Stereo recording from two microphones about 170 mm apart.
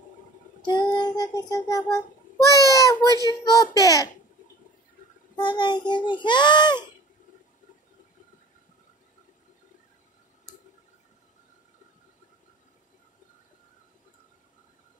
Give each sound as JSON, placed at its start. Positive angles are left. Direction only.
{"t": 0.7, "sound": "child singing", "side_deg": 25}
{"t": 3.3, "sound": "a child's voice", "side_deg": 20}
{"t": 5.3, "sound": "a child's voice", "side_deg": 25}